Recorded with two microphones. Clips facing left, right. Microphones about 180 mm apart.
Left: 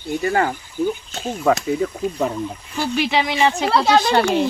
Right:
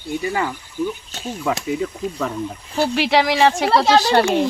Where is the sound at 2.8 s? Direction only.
75° right (ahead or behind).